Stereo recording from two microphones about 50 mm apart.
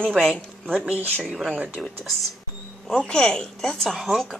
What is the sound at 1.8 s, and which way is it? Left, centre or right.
Speech, centre.